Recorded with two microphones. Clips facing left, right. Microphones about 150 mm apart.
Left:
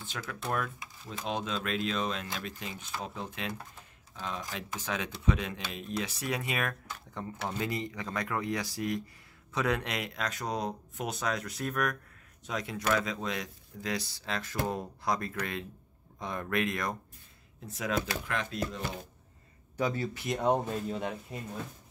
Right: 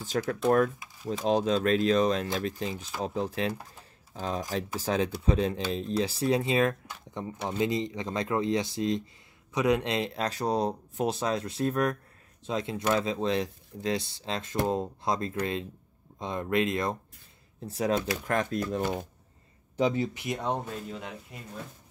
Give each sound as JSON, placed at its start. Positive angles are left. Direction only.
{"t": 0.0, "sound": "speech", "side_deg": -40}
{"t": 17.6, "sound": "speech", "side_deg": -35}
{"t": 19.8, "sound": "speech", "side_deg": -20}
{"t": 20.3, "sound": "speech", "side_deg": 10}
{"t": 20.9, "sound": "speech", "side_deg": 30}